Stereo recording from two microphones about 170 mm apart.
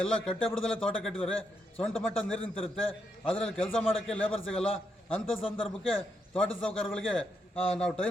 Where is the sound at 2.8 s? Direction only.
35° left (ahead or behind).